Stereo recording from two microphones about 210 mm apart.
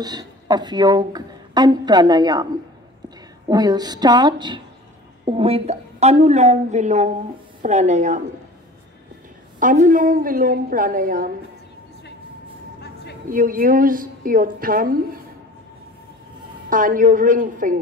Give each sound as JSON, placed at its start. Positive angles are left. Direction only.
{"t": 0.0, "sound": "a woman's voice", "side_deg": -20}
{"t": 3.4, "sound": "a woman's voice", "side_deg": -20}
{"t": 9.6, "sound": "a woman's voice", "side_deg": -40}
{"t": 13.3, "sound": "a woman's voice", "side_deg": -40}
{"t": 16.6, "sound": "a woman's voice", "side_deg": -40}